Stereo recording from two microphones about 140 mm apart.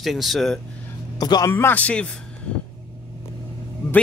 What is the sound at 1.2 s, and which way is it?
Speech, 30° left (ahead or behind).